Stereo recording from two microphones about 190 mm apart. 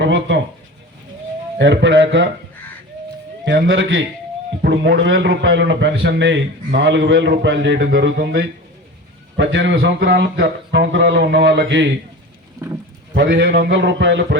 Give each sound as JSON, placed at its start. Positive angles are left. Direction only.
{"t": 0.0, "sound": "a sound", "side_deg": -75}
{"t": 1.5, "sound": "a man's voice", "side_deg": -70}
{"t": 3.4, "sound": "a man's voice", "side_deg": -70}
{"t": 4.6, "sound": "a man's voice", "side_deg": -65}
{"t": 13.1, "sound": "a man's voice", "side_deg": -65}